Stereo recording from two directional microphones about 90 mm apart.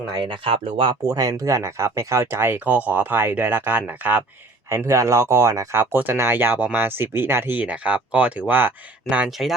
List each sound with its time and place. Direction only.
0.1 s speech: 60° right (ahead or behind); by 0.9 s 80° right
1.0 s speech: 45° right (ahead or behind); by 4.2 s 20° right (ahead or behind)
4.7 s speech: 30° right (ahead or behind); by 9.3 s 15° right (ahead or behind)